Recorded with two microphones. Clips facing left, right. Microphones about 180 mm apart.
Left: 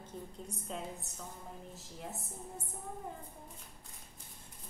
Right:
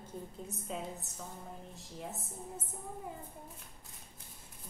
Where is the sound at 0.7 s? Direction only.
Centre (ahead or behind).